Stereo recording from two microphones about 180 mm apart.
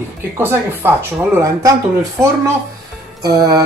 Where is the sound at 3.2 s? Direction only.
20° right (ahead or behind).